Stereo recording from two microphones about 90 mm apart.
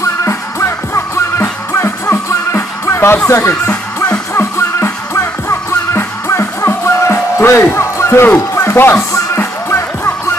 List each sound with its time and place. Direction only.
0.0 s music: 30° left (ahead or behind)